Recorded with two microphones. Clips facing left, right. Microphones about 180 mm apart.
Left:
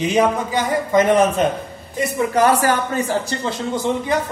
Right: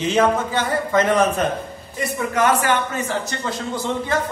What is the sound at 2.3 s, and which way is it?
Speech, 35° left (ahead or behind).